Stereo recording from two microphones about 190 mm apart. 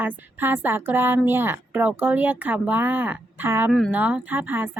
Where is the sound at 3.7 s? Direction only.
5° left (ahead or behind).